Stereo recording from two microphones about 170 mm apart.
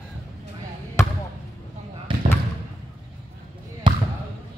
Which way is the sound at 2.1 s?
30° right (ahead or behind).